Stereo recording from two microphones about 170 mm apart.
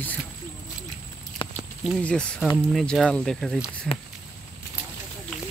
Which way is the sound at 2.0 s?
5° left (ahead or behind).